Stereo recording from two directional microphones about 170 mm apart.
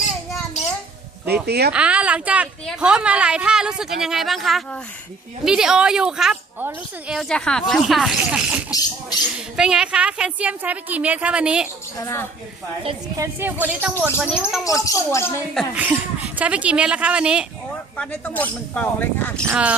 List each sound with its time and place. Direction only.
1.3 s speech: 70° right (ahead or behind)
1.7 s a woman's voice: 5° right (ahead or behind)
7.2 s a woman's voice: 5° left (ahead or behind)
9.6 s a woman's voice: 5° right (ahead or behind)
11.9 s speech: 15° left (ahead or behind)
13.1 s a woman's voice: 15° right (ahead or behind)
14.6 s speech: 20° left (ahead or behind)
15.5 s a woman's voice: 10° right (ahead or behind)
17.9 s speech: 10° left (ahead or behind)